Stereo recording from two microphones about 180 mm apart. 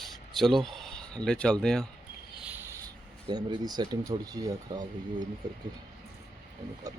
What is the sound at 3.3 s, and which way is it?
Speech, 25° right (ahead or behind).